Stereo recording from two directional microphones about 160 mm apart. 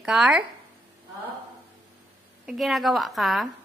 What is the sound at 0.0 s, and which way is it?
Speech, centre (ahead or behind).